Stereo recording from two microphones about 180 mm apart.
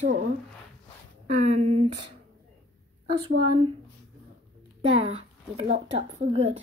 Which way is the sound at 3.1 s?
30° right (ahead or behind).